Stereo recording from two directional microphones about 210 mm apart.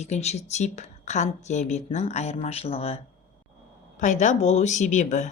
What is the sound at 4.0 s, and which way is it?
Speech, 35° left (ahead or behind).